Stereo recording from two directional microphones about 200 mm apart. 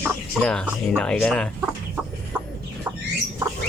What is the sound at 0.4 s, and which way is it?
Speech, 5° left (ahead or behind).